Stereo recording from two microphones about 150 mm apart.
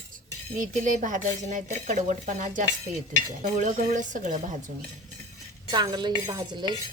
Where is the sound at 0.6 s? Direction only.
60° right (ahead or behind).